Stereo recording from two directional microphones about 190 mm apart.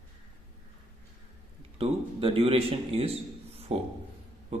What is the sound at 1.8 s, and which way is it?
A man's voice, 30° right (ahead or behind).